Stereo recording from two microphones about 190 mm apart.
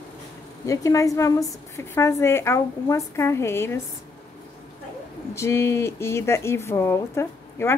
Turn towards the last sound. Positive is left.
turn(degrees=15)  # may be behind; listen again after turning